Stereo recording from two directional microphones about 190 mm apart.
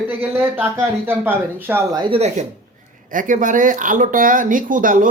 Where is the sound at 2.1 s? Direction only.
35° right (ahead or behind).